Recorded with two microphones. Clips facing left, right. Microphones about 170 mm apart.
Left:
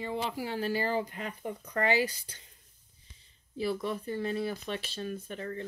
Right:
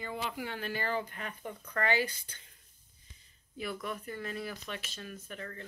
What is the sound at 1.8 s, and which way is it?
Speech, 35° left (ahead or behind).